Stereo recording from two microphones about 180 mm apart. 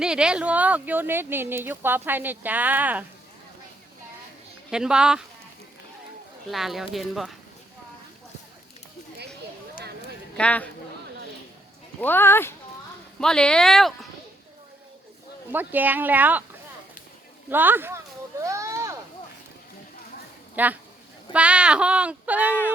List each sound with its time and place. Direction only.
0.0 s speech: 5° right (ahead or behind)
4.7 s speech: 5° right (ahead or behind)
6.5 s speech: centre (ahead or behind)
10.3 s speech: 5° left (ahead or behind)
11.9 s speech: 10° left (ahead or behind)
15.5 s speech: 10° right (ahead or behind)
17.5 s speech: 10° right (ahead or behind)
18.4 s a sound: 15° right (ahead or behind)
20.6 s speech: 10° right (ahead or behind)